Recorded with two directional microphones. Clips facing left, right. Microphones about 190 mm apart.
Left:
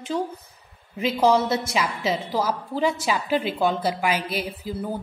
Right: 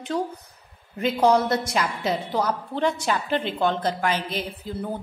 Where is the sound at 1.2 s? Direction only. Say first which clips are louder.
Even; centre (ahead or behind).